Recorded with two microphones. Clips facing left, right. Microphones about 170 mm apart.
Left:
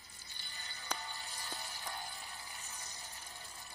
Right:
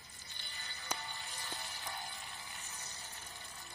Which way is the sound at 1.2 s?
10° left (ahead or behind).